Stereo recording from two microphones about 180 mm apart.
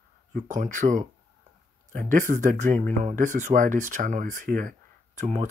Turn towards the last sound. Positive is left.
turn(degrees=-40)  # may be behind; listen again after turning